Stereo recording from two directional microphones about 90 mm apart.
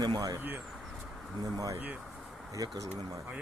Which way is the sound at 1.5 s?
40° right (ahead or behind).